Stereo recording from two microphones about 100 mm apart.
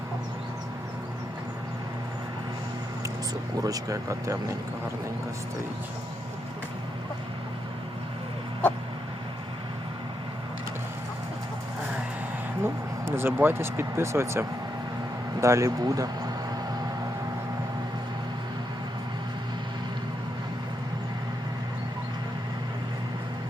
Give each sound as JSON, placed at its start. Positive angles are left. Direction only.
{"t": 3.6, "sound": "speech", "side_deg": -35}
{"t": 12.6, "sound": "speech", "side_deg": -25}